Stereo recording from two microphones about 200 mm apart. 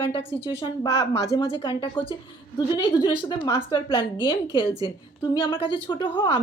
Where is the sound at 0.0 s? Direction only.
25° left (ahead or behind).